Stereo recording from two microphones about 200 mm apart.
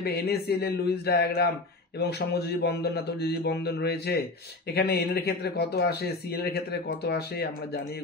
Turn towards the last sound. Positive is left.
turn(degrees=55)  # may be behind; listen again after turning